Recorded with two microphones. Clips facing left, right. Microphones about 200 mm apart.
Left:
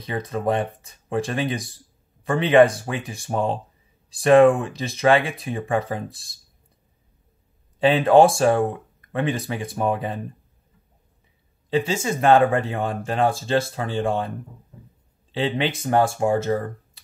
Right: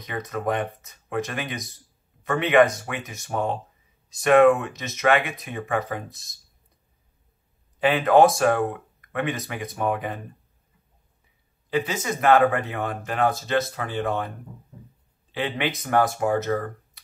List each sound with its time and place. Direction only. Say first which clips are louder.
0.0 s speech: left 3 dB; 30° left (ahead or behind)
7.8 s speech: left 2 dB; 30° left (ahead or behind)
11.7 s speech: left 3 dB; 30° left (ahead or behind)
15.3 s speech: left 3 dB; 25° left (ahead or behind)